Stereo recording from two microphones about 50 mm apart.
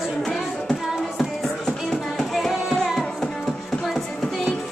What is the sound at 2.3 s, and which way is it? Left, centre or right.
Music, centre.